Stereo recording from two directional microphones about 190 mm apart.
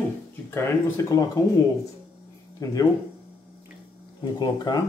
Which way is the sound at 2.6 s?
20° left (ahead or behind).